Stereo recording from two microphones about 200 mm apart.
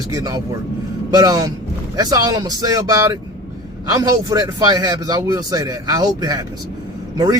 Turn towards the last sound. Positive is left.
turn(degrees=-20)  # may be behind; listen again after turning